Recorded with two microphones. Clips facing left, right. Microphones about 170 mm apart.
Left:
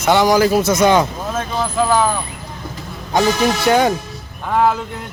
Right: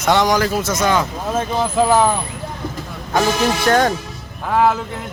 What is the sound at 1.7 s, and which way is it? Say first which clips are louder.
Speech: right 1 dB; 25° right (ahead or behind).